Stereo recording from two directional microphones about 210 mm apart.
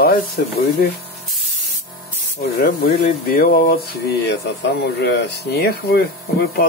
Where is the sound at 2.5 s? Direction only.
40° left (ahead or behind).